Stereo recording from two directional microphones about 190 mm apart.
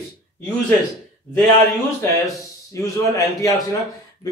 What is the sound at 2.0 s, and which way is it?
A man's voice, 15° left (ahead or behind).